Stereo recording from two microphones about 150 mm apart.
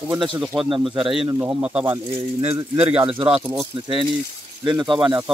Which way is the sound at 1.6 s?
10° right (ahead or behind).